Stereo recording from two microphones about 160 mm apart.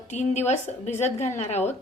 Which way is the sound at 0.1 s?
45° left (ahead or behind).